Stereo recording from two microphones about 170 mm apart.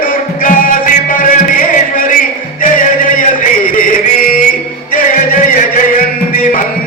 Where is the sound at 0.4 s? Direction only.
55° left (ahead or behind).